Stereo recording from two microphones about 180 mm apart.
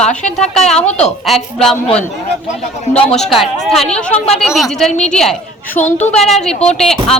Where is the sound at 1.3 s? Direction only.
Centre (ahead or behind).